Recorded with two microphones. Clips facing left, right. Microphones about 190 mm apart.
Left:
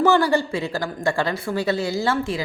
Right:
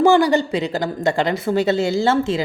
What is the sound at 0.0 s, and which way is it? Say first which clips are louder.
Speech: right 4 dB; 15° right (ahead or behind).